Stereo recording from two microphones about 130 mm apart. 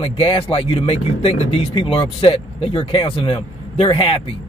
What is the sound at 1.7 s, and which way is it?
Speech, 40° left (ahead or behind).